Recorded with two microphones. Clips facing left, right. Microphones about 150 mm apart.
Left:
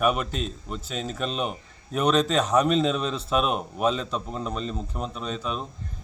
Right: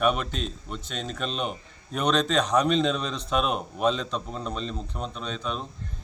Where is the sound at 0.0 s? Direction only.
5° left (ahead or behind).